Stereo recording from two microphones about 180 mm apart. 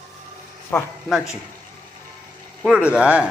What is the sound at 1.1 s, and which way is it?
Speech, 5° right (ahead or behind).